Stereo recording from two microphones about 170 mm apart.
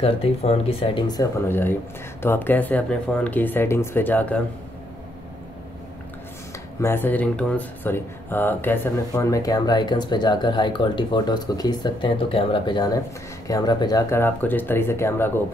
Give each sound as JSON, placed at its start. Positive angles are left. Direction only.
{"t": 0.0, "sound": "speech", "side_deg": 35}
{"t": 6.8, "sound": "speech", "side_deg": 15}